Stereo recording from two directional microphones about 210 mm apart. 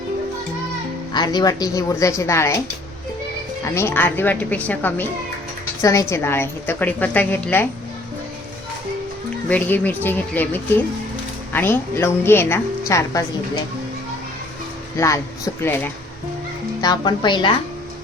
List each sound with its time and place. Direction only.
1.1 s a woman's voice: 20° left (ahead or behind)
3.8 s a woman's voice: 10° left (ahead or behind)
9.5 s a woman's voice: 10° left (ahead or behind)
14.9 s a woman's voice: 15° left (ahead or behind)
16.8 s speech: 20° left (ahead or behind)